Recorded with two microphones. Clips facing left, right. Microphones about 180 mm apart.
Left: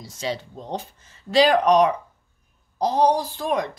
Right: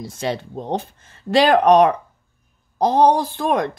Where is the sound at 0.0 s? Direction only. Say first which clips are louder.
Right 4 dB; 55° right (ahead or behind).